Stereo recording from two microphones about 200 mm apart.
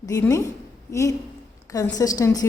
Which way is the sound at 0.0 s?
15° left (ahead or behind).